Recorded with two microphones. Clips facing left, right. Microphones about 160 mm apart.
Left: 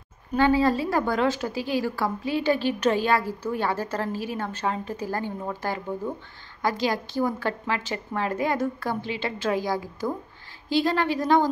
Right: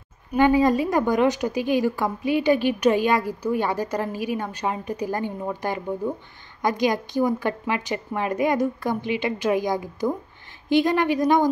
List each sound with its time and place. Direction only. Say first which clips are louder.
0.3 s a woman's voice: right 3 dB; 15° right (ahead or behind)